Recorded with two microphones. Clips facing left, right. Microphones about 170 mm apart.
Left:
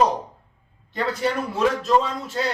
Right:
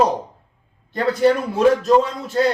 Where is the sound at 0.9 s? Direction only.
40° right (ahead or behind).